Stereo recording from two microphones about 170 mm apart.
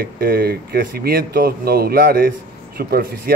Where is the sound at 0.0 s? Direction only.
65° right (ahead or behind).